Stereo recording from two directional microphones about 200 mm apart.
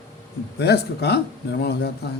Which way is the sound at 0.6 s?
55° left (ahead or behind).